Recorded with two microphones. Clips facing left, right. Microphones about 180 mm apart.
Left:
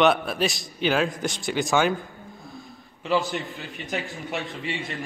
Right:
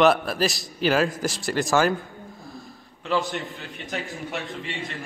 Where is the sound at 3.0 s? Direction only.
5° left (ahead or behind).